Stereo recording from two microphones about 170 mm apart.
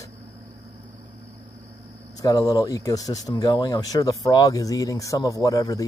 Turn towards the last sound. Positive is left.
turn(degrees=20)  # may be behind; listen again after turning